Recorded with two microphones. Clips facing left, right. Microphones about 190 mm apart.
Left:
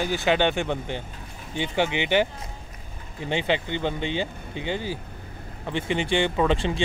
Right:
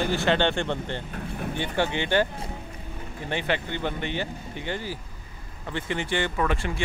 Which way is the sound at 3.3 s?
20° left (ahead or behind).